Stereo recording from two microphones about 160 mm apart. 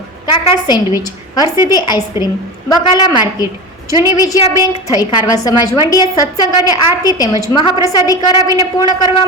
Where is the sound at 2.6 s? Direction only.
25° left (ahead or behind).